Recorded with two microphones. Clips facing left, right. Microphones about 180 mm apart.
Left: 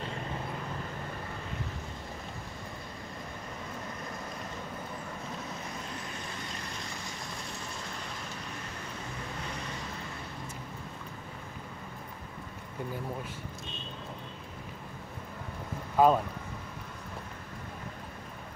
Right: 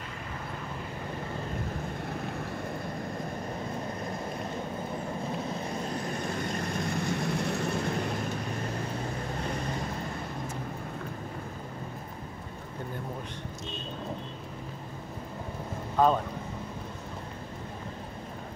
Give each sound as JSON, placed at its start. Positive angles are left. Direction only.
{"t": 6.2, "sound": "vehicle", "side_deg": -55}
{"t": 16.0, "sound": "speech", "side_deg": 10}